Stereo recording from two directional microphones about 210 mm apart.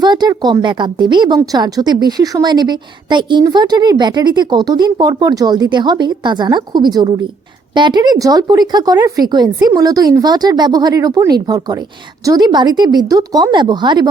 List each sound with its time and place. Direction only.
0.0 s a woman's voice: 20° right (ahead or behind)